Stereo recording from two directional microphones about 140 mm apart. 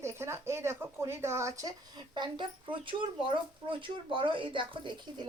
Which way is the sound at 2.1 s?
35° right (ahead or behind).